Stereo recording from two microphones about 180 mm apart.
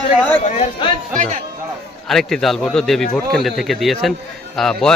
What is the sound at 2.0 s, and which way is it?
A man's voice, centre (ahead or behind).